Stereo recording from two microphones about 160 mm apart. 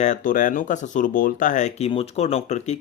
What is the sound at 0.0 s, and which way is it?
Speech, 55° left (ahead or behind).